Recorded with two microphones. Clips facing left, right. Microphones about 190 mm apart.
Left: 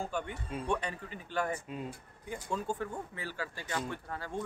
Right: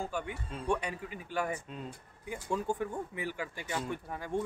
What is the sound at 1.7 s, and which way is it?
Speech, 5° left (ahead or behind).